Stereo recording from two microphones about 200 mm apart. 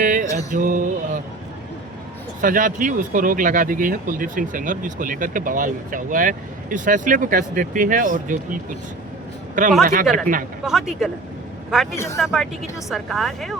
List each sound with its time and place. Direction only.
0.0 s music: 40° right (ahead or behind)
0.5 s speech: 40° right (ahead or behind)
2.4 s speech: 40° right (ahead or behind)
9.8 s speech: 45° right (ahead or behind)
10.7 s a woman's voice: centre (ahead or behind)
11.9 s speech: 15° left (ahead or behind)
12.2 s a woman's voice: centre (ahead or behind)